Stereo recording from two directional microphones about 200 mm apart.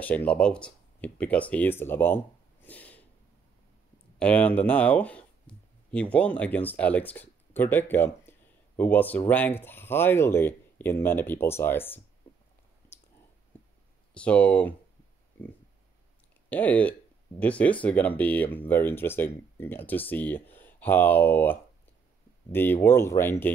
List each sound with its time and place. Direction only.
0.0 s speech: 5° left (ahead or behind)
4.2 s speech: 5° left (ahead or behind)
5.5 s a sound: 5° left (ahead or behind)
5.9 s speech: 5° left (ahead or behind)
13.5 s a sound: 10° left (ahead or behind)
14.1 s speech: 5° left (ahead or behind)
16.4 s speech: 10° left (ahead or behind)